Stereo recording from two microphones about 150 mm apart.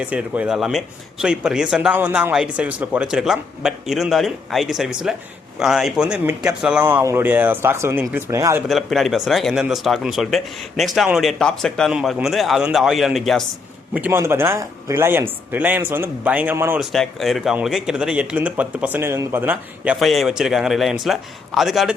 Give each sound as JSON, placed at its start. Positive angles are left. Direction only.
{"t": 0.0, "sound": "speech", "side_deg": -10}
{"t": 8.6, "sound": "speech", "side_deg": 0}
{"t": 13.9, "sound": "speech", "side_deg": -15}
{"t": 16.9, "sound": "speech", "side_deg": 0}